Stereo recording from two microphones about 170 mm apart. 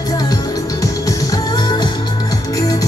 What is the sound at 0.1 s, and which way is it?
Music, 20° left (ahead or behind).